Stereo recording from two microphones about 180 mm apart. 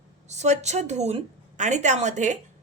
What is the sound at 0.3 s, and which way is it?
Speech, 40° right (ahead or behind).